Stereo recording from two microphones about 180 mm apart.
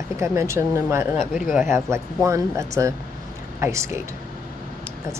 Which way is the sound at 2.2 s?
15° right (ahead or behind).